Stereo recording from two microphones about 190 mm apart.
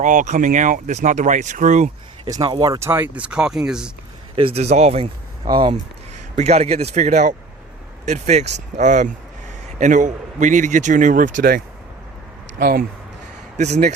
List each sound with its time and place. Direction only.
0.0 s speech: 40° right (ahead or behind)
2.2 s speech: 20° right (ahead or behind); by 3.9 s 5° right (ahead or behind)
4.4 s speech: 30° right (ahead or behind)
5.5 s speech: 25° right (ahead or behind)
6.3 s a man's voice: 35° right (ahead or behind); by 12.8 s 50° right (ahead or behind)
13.6 s speech: 35° right (ahead or behind)